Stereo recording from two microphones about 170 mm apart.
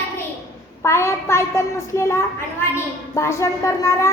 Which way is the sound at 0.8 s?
15° left (ahead or behind).